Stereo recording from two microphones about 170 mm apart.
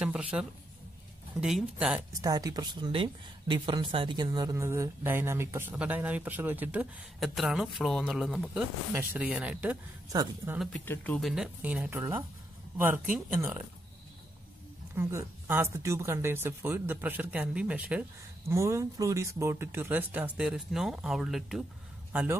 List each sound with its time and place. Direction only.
0.0 s a sound: 5° right (ahead or behind)
1.4 s speech: 5° right (ahead or behind)
2.2 s a woman's voice: 20° right (ahead or behind)
10.6 s a woman's voice: 10° left (ahead or behind); by 13.6 s 10° right (ahead or behind)
15.0 s a woman's voice: 15° right (ahead or behind)